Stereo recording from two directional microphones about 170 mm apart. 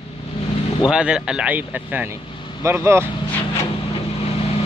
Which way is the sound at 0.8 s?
5° right (ahead or behind).